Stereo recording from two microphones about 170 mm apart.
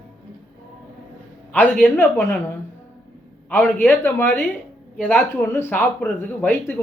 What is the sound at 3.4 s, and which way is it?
Speech, 10° left (ahead or behind).